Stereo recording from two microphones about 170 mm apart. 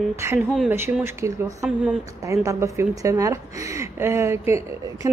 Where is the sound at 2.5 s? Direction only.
15° right (ahead or behind).